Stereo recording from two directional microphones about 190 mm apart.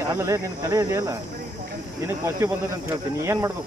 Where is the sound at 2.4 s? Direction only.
15° right (ahead or behind).